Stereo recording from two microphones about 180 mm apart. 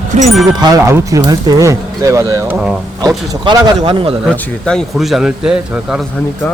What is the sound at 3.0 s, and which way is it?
Speech, 25° right (ahead or behind).